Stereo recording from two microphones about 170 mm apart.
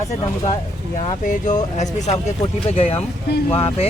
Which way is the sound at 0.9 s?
45° left (ahead or behind).